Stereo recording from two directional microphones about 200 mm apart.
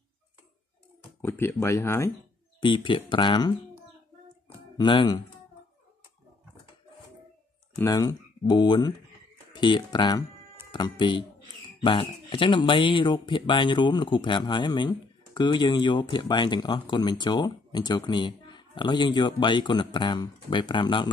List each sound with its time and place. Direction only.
1.2 s speech: 10° left (ahead or behind)
2.6 s speech: 25° left (ahead or behind)
4.7 s speech: 20° left (ahead or behind)
7.7 s speech: 15° left (ahead or behind)